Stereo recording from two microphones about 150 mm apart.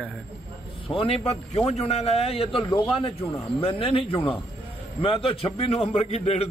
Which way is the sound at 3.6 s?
35° left (ahead or behind).